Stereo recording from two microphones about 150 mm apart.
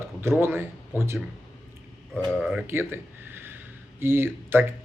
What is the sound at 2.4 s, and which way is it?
Speech, 5° right (ahead or behind).